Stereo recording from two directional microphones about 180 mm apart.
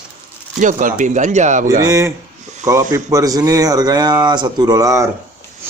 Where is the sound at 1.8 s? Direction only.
20° right (ahead or behind).